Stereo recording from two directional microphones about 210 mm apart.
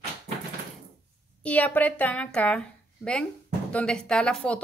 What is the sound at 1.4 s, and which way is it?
Speech, 5° left (ahead or behind).